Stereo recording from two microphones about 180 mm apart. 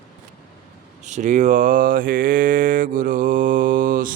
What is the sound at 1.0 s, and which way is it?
Mantra, 40° right (ahead or behind).